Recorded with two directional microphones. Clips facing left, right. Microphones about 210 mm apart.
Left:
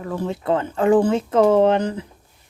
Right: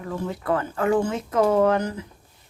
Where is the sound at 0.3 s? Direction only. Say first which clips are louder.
Left 3 dB; 25° left (ahead or behind).